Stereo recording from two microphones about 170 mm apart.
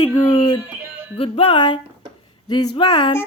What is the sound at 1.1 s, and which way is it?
Music, 35° left (ahead or behind).